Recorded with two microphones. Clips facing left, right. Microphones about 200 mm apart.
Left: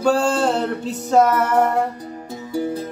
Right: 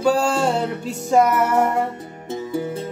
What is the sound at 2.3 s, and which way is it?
Music, 25° right (ahead or behind).